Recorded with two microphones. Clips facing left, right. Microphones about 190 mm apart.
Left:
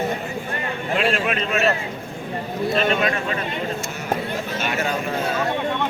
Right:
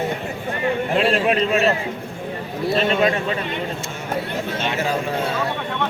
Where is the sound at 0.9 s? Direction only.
30° right (ahead or behind).